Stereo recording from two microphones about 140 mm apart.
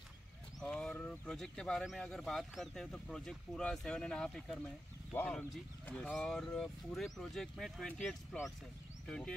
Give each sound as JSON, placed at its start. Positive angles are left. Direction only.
{"t": 0.6, "sound": "speech", "side_deg": 5}
{"t": 5.1, "sound": "speech", "side_deg": 15}